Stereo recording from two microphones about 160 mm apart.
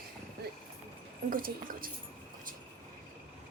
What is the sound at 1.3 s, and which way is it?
Speech, 65° right (ahead or behind).